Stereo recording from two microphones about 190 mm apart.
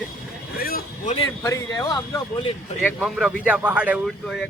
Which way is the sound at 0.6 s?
50° left (ahead or behind).